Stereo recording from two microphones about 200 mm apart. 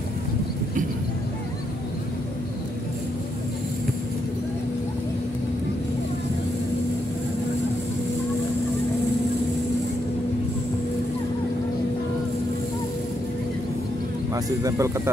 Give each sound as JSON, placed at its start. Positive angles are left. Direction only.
{"t": 14.3, "sound": "a man's voice", "side_deg": -15}